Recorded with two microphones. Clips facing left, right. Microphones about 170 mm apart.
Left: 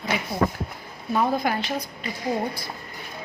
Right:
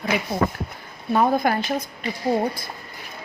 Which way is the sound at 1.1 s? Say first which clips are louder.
Right 4 dB; 50° right (ahead or behind).